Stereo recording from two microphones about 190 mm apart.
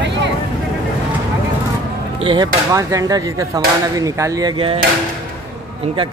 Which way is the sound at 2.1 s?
25° right (ahead or behind).